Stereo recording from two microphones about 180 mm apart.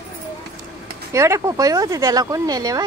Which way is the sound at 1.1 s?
15° right (ahead or behind).